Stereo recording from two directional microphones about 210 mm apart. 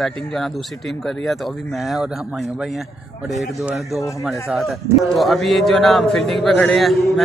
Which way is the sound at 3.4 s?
Centre (ahead or behind).